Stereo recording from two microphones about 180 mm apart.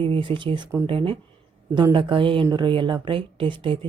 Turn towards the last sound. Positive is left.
turn(degrees=-30)  # may be behind; listen again after turning